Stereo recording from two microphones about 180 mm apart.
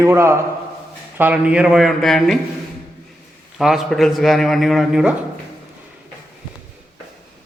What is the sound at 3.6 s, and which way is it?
A man's voice, centre (ahead or behind).